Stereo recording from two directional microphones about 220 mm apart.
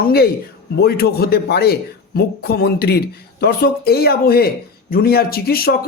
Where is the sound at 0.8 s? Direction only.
45° left (ahead or behind).